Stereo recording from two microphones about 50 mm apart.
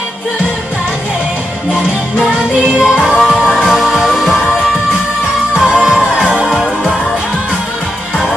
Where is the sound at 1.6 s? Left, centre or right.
Right.